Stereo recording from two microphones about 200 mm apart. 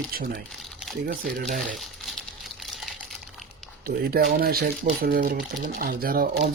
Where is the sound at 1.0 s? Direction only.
45° right (ahead or behind).